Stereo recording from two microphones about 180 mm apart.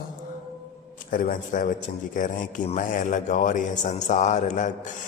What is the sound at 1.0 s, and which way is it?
A man's voice, 50° left (ahead or behind).